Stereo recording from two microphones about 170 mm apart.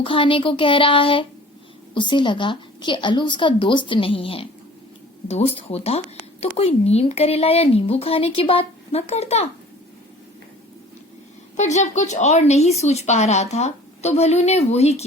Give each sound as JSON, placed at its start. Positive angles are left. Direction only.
{"t": 0.0, "sound": "a woman's voice", "side_deg": 30}
{"t": 11.5, "sound": "a woman's voice", "side_deg": 45}